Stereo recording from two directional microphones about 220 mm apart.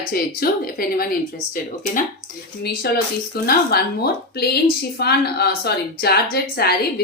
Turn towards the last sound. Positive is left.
turn(degrees=45)  # may be behind; listen again after turning